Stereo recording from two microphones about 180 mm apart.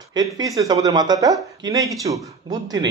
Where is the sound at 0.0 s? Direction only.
20° right (ahead or behind).